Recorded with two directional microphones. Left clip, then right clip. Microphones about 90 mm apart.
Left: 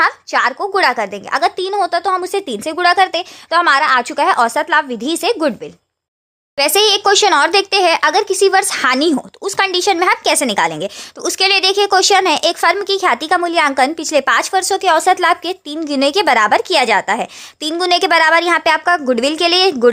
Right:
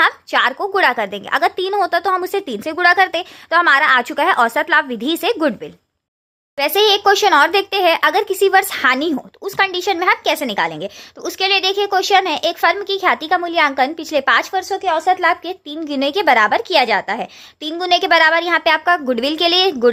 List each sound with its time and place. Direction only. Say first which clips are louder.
0.0 s a woman's voice: left 1 dB; 10° left (ahead or behind)
2.5 s a woman's voice: even; 20° left (ahead or behind)
6.6 s a child's voice: left 2 dB; 55° left (ahead or behind); by 8.8 s 40° left (ahead or behind)
8.8 s speech: left 2 dB; 60° left (ahead or behind); by 15.8 s 85° left
15.8 s speech: left 3 dB; 55° left (ahead or behind)